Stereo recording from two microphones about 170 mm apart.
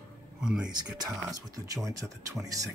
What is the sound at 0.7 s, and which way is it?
Speech, 20° right (ahead or behind).